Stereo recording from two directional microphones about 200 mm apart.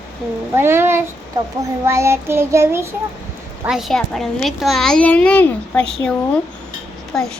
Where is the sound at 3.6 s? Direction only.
Centre (ahead or behind).